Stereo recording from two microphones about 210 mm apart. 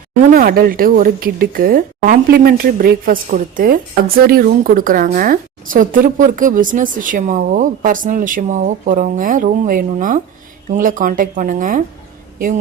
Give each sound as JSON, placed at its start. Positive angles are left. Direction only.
{"t": 0.3, "sound": "speech", "side_deg": -45}